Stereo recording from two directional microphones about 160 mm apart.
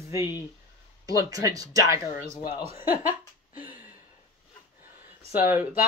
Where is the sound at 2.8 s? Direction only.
10° right (ahead or behind).